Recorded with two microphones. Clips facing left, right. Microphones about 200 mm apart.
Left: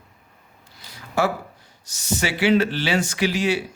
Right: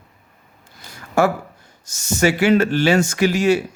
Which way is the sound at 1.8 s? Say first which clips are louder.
Right 7 dB; 45° right (ahead or behind).